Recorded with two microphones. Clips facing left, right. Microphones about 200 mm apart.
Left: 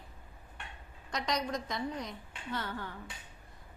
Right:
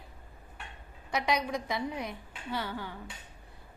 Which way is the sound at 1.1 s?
10° right (ahead or behind).